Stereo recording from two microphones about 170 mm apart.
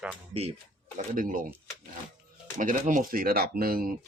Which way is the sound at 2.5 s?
50° right (ahead or behind).